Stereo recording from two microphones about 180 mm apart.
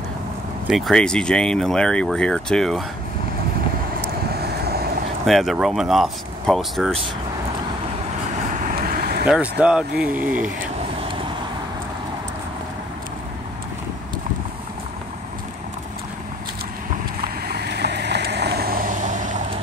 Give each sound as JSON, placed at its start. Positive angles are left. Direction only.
{"t": 0.7, "sound": "speech", "side_deg": 0}
{"t": 4.4, "sound": "vehicle", "side_deg": -60}
{"t": 5.2, "sound": "speech", "side_deg": 0}
{"t": 8.5, "sound": "vehicle", "side_deg": -50}
{"t": 9.2, "sound": "speech", "side_deg": -5}
{"t": 16.9, "sound": "vehicle", "side_deg": -60}